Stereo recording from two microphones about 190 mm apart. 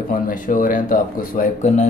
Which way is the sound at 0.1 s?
45° left (ahead or behind).